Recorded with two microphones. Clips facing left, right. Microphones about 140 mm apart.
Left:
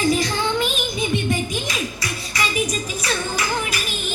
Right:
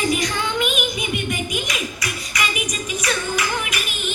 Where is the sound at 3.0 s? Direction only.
35° left (ahead or behind).